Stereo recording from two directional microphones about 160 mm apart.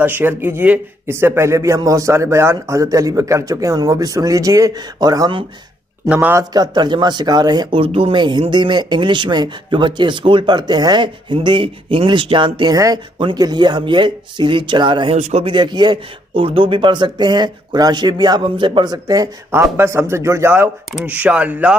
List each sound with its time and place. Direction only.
0.0 s speech: 15° right (ahead or behind)
6.0 s speech: 10° right (ahead or behind)
6.5 s speech: 25° right (ahead or behind)
15.1 s speech: 45° right (ahead or behind)
15.4 s speech: 30° right (ahead or behind); by 21.7 s 10° right (ahead or behind)